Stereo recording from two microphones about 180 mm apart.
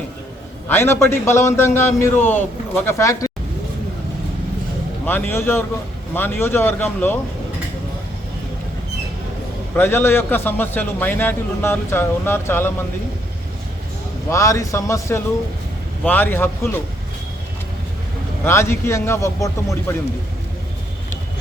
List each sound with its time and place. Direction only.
0.7 s a man's voice: 15° left (ahead or behind)
5.0 s a man's voice: 10° left (ahead or behind)
9.7 s a man's voice: 10° left (ahead or behind)
14.3 s a man's voice: 15° left (ahead or behind)
18.4 s a man's voice: 15° left (ahead or behind)